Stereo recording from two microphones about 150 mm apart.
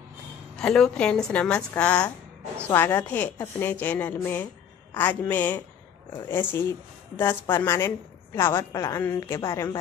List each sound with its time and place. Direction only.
0.6 s a woman's voice: 5° left (ahead or behind)